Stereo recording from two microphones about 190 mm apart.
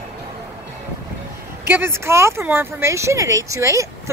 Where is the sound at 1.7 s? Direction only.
15° right (ahead or behind).